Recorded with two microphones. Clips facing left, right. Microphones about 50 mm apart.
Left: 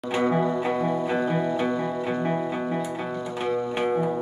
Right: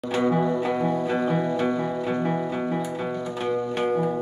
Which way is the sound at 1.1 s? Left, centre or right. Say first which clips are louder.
Right 1 dB; centre.